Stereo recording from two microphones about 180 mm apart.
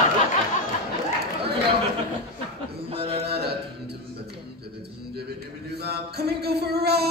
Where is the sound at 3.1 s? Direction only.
65° right (ahead or behind).